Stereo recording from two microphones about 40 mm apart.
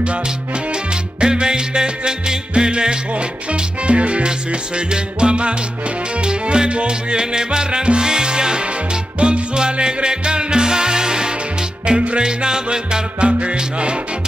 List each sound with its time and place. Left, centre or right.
1.2 s music: centre
3.8 s salsa music: right
6.2 s music: right